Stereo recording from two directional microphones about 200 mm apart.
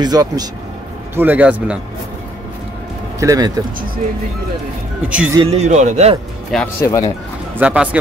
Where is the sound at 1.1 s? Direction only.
10° right (ahead or behind).